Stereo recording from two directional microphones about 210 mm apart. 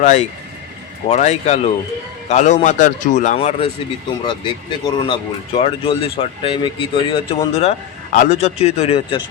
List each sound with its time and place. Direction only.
0.0 s speech: 35° left (ahead or behind)